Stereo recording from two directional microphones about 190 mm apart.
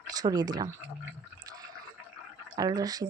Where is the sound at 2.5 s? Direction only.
20° right (ahead or behind).